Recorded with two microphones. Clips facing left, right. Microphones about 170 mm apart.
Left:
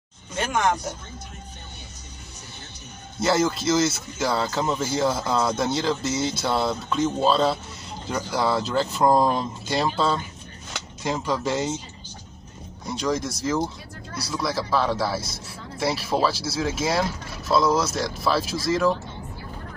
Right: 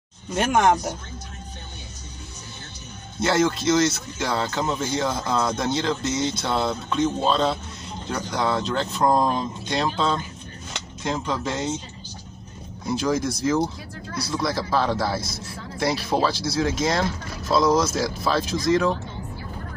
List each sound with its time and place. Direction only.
0.4 s speech: 50° right (ahead or behind)
3.2 s speech: centre (ahead or behind)
12.8 s speech: centre (ahead or behind)